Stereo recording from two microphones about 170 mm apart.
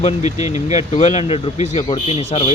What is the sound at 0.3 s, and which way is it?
Speech, 20° right (ahead or behind).